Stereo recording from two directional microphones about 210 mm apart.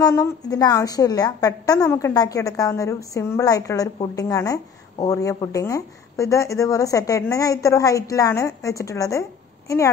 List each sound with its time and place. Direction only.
0.0 s a woman's voice: 15° left (ahead or behind)